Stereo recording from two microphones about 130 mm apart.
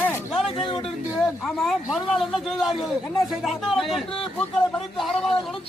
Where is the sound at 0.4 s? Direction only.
40° left (ahead or behind).